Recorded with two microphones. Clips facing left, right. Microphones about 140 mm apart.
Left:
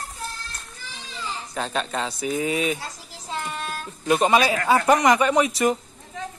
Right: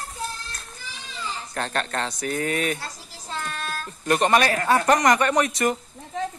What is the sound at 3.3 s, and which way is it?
Child singing, 15° left (ahead or behind).